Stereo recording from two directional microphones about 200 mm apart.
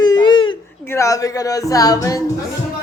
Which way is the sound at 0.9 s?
15° left (ahead or behind).